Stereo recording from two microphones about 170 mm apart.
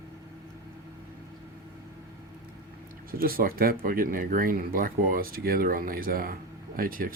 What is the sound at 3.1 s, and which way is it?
Speech, 60° right (ahead or behind).